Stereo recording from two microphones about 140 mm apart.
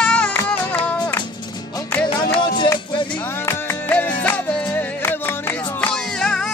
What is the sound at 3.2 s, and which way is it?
Music, 15° left (ahead or behind).